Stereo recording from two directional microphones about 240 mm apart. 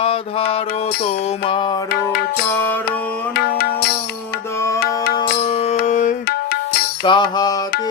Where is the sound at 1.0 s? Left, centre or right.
Left.